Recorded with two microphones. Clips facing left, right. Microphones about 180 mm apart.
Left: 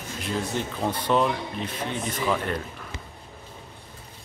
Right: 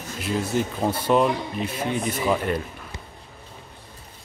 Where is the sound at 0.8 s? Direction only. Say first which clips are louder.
Right 2 dB; 10° right (ahead or behind).